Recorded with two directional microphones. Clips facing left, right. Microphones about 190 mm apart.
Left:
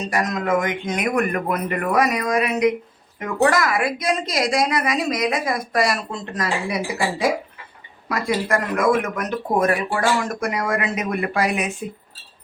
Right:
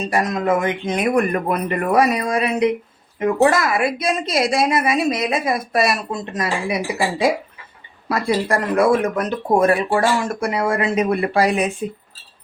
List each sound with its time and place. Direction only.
0.1 s a woman's voice: 30° right (ahead or behind)
8.1 s speech: 35° right (ahead or behind)